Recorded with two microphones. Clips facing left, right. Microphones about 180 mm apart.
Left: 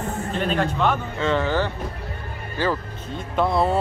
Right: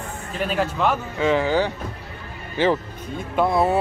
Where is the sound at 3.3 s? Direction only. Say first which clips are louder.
Right 1 dB; centre (ahead or behind).